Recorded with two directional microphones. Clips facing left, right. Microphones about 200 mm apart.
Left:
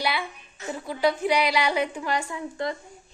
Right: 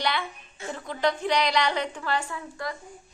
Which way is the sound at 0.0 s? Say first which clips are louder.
Left 1 dB; 10° left (ahead or behind).